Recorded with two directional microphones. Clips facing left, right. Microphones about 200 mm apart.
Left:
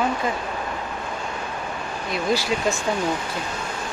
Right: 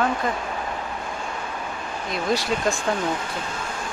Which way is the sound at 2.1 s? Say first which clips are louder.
Left 1 dB; centre (ahead or behind).